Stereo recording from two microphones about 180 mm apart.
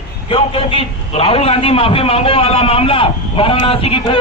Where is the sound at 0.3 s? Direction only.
30° left (ahead or behind).